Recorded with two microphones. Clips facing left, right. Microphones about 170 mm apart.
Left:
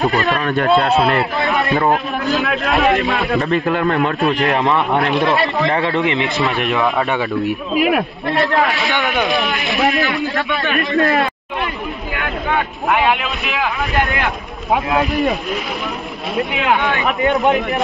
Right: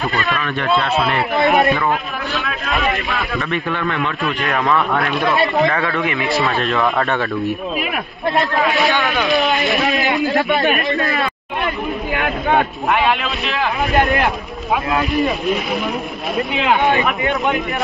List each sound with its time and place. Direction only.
0.0 s a man's voice: 35° left (ahead or behind)
4.5 s speech: 25° left (ahead or behind)
8.9 s speech: 20° left (ahead or behind)
10.0 s a man's voice: 20° right (ahead or behind)
11.0 s speech: 65° left (ahead or behind)
12.9 s speech: 10° left (ahead or behind)
14.9 s speech: centre (ahead or behind)